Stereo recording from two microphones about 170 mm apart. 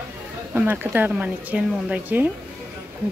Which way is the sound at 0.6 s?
10° right (ahead or behind).